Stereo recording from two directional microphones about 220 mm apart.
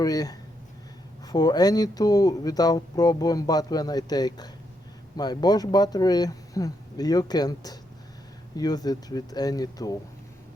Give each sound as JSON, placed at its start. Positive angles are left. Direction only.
{"t": 0.0, "sound": "speech", "side_deg": 15}